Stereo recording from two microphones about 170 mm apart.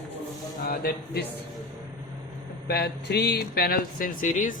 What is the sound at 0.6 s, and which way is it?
Speech, 65° left (ahead or behind).